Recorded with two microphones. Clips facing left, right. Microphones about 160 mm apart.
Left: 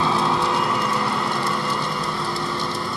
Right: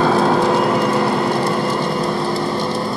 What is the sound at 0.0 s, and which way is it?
Vehicle, 50° right (ahead or behind).